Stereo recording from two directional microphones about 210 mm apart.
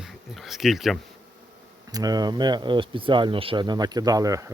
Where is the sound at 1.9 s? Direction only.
20° right (ahead or behind).